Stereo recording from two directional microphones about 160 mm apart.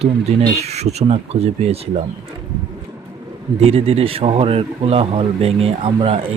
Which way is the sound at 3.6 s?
40° right (ahead or behind).